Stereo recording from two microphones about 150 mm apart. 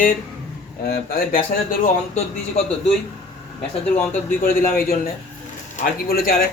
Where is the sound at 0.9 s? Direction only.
80° left.